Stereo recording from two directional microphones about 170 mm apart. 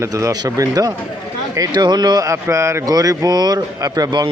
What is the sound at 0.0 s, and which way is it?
Speech, 20° right (ahead or behind).